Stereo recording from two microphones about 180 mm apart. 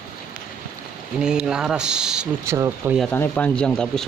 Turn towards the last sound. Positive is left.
turn(degrees=5)  # may be behind; listen again after turning